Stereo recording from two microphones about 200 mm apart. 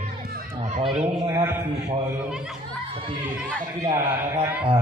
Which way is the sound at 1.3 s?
15° right (ahead or behind).